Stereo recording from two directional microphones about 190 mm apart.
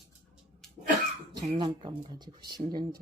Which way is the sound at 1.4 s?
25° right (ahead or behind).